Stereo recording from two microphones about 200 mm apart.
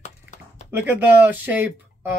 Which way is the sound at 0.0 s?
35° left (ahead or behind).